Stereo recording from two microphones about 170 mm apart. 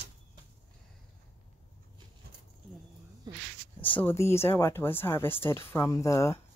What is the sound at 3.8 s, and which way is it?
Speech, 10° left (ahead or behind).